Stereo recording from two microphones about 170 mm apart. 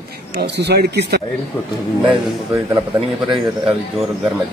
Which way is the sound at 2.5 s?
20° right (ahead or behind).